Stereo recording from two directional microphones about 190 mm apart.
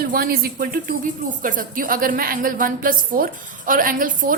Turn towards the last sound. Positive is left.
turn(degrees=-45)  # may be behind; listen again after turning